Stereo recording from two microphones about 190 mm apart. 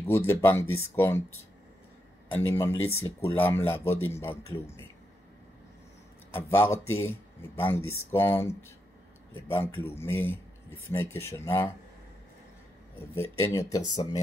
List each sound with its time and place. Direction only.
0.1 s speech: 15° left (ahead or behind)
2.3 s speech: 10° left (ahead or behind)
6.3 s speech: 15° left (ahead or behind)
13.1 s speech: 15° left (ahead or behind)